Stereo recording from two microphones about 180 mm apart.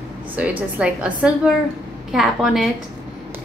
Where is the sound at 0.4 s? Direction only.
5° right (ahead or behind).